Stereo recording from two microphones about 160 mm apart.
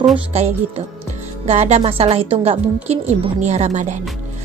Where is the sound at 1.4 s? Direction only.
45° right (ahead or behind).